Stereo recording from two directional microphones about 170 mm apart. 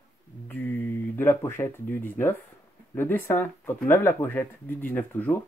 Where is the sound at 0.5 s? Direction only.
10° left (ahead or behind).